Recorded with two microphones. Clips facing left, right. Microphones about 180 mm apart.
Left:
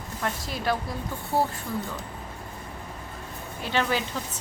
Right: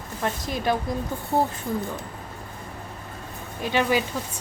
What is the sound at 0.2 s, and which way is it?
Speech, 20° right (ahead or behind).